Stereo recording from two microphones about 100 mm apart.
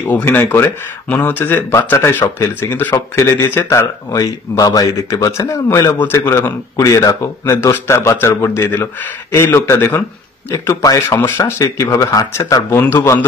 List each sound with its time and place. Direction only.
0.1 s a man's voice: 20° left (ahead or behind); by 5.6 s 40° left (ahead or behind)
6.1 s speech: 25° left (ahead or behind)
10.5 s a man's voice: 35° left (ahead or behind)